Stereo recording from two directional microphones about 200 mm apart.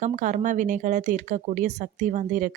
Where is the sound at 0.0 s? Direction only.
40° right (ahead or behind).